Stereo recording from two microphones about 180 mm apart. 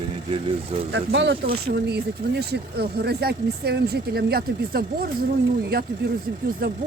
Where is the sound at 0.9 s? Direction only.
75° right (ahead or behind); by 6.8 s 55° right (ahead or behind).